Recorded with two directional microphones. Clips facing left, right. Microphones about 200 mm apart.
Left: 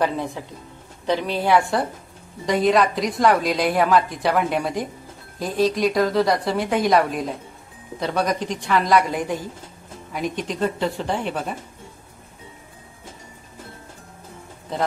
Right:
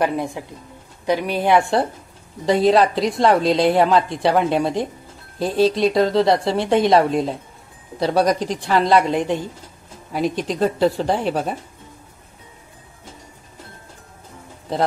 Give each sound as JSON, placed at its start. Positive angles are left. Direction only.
{"t": 0.0, "sound": "a woman's voice", "side_deg": -15}